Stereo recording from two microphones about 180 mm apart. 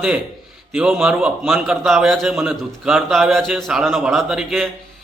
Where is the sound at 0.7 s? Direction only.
5° right (ahead or behind).